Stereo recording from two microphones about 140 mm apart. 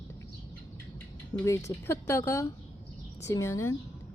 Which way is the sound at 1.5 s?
20° left (ahead or behind).